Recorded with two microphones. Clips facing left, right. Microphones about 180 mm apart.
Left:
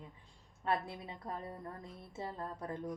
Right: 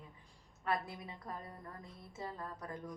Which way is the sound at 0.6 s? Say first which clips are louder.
Left 2 dB; 25° left (ahead or behind).